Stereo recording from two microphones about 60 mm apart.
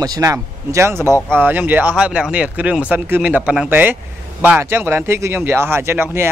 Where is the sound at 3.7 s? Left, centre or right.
Right.